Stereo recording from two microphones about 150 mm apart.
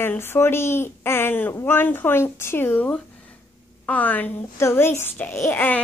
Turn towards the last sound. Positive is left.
turn(degrees=10)  # may be behind; listen again after turning